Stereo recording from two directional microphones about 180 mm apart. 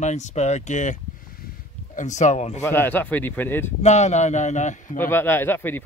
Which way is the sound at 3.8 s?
40° left (ahead or behind).